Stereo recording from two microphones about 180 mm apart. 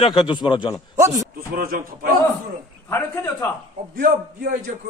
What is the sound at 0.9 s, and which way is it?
Speech, 15° right (ahead or behind).